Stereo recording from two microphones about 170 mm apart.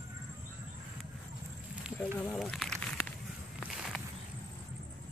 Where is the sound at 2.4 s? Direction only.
5° left (ahead or behind).